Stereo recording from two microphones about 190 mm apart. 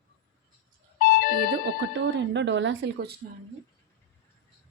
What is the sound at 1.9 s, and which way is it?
Speech, 70° right (ahead or behind).